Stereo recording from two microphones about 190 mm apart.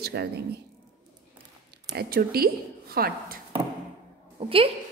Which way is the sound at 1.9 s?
55° right (ahead or behind).